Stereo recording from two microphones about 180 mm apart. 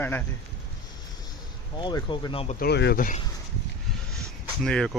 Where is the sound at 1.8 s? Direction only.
25° left (ahead or behind).